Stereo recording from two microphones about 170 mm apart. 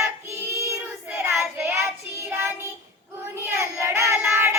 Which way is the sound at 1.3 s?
5° right (ahead or behind).